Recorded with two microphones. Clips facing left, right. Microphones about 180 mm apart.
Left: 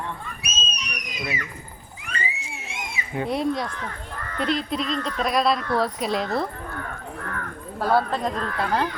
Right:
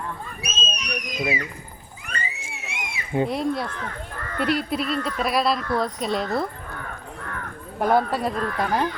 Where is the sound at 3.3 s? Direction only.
Centre (ahead or behind).